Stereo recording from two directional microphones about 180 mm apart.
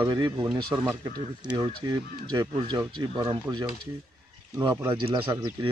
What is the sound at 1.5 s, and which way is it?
Speech, 25° right (ahead or behind).